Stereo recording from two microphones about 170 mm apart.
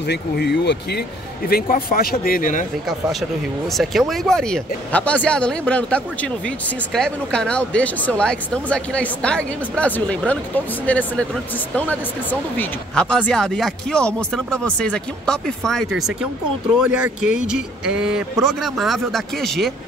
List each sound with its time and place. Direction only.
0.1 s speech: 80° left
1.5 s speech: 60° left (ahead or behind)
3.7 s speech: centre (ahead or behind)